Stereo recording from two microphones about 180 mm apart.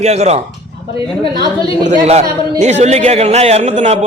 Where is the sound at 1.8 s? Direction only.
40° right (ahead or behind).